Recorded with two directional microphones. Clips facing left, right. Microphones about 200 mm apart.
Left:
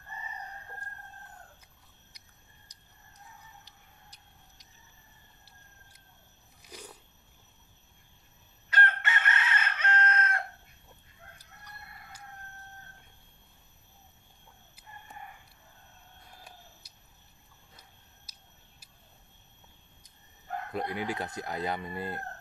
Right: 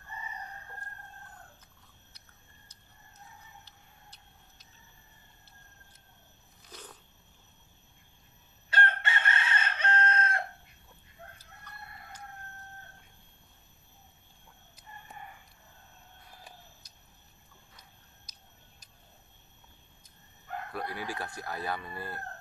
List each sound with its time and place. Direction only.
2.7 s chicken: 15° left (ahead or behind)
3.6 s tick-tock: 15° left (ahead or behind)
6.7 s a sound: 10° left (ahead or behind)
8.6 s chicken: 30° right (ahead or behind)
20.7 s speech: 20° left (ahead or behind)